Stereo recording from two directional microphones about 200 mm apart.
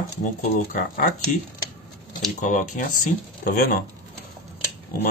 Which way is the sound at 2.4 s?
40° left (ahead or behind).